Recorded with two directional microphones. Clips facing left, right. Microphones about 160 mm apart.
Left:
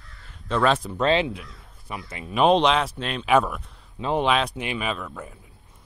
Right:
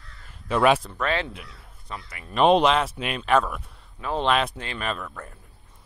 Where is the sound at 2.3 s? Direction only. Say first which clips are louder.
Even; centre (ahead or behind).